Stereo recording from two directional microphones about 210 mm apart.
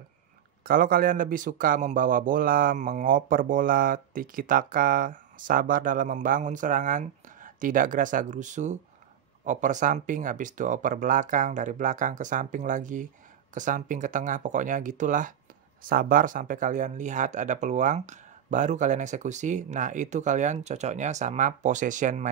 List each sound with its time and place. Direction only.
0.7 s a man's voice: 40° right (ahead or behind)